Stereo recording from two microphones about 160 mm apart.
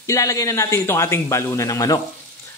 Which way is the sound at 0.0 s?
20° left (ahead or behind).